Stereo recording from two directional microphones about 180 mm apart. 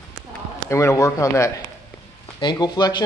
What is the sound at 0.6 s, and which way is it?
A man's voice, 15° left (ahead or behind).